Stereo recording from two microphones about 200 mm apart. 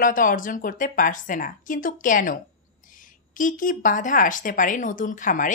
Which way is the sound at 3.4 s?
40° left (ahead or behind).